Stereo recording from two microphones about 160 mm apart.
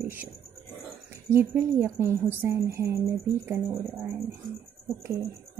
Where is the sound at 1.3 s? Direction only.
10° right (ahead or behind).